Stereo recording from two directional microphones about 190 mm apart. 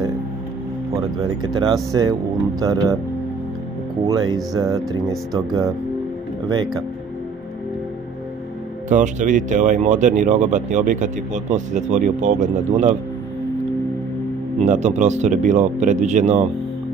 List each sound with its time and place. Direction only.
1.4 s speech: 20° right (ahead or behind)
4.0 s speech: 20° right (ahead or behind)
8.8 s speech: 40° right (ahead or behind)
14.6 s speech: 35° right (ahead or behind)